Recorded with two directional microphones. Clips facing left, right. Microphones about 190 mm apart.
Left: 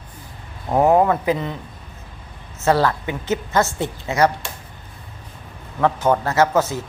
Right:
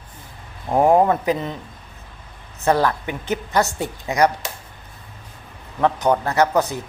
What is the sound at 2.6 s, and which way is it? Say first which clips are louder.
Speech: left 1 dB; 15° right (ahead or behind).